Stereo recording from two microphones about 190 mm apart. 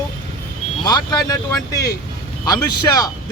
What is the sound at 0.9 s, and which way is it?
Speech, 20° left (ahead or behind).